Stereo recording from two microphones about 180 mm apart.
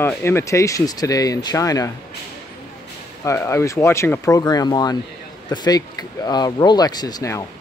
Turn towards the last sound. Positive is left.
turn(degrees=20)  # may be behind; listen again after turning